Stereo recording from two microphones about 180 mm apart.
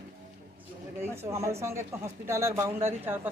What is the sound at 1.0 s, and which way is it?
A woman's voice, 15° right (ahead or behind).